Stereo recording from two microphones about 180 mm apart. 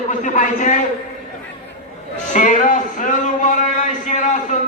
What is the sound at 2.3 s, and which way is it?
Speech, 45° left (ahead or behind).